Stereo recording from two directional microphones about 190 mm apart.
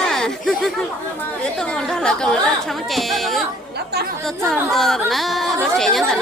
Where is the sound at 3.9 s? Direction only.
60° right (ahead or behind).